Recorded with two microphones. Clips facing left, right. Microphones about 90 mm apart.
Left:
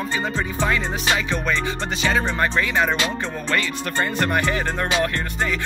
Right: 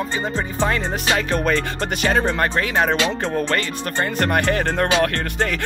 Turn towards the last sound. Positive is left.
turn(degrees=-65)  # may be behind; listen again after turning